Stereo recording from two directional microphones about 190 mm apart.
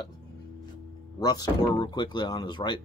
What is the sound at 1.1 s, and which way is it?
Speech, 20° left (ahead or behind).